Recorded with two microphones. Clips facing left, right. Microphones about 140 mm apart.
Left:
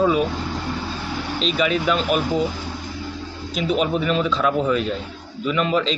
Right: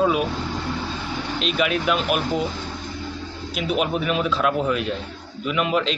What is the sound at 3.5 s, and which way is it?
A man's voice, 5° right (ahead or behind).